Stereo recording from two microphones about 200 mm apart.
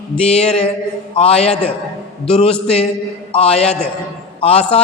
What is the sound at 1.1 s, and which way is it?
A woman's voice, 30° left (ahead or behind).